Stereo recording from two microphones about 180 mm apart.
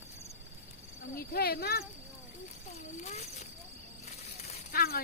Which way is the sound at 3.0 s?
40° left (ahead or behind).